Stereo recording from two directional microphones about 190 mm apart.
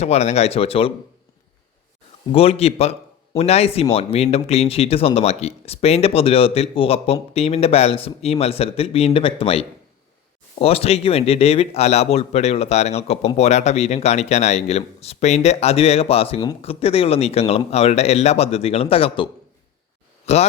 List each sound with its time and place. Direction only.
0.0 s a man's voice: 35° left (ahead or behind)
2.3 s a man's voice: 30° left (ahead or behind)